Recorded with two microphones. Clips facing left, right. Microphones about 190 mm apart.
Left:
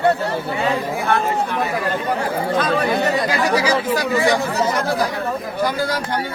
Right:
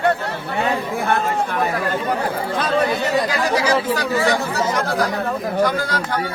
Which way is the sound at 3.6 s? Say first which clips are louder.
Even; 10° left (ahead or behind).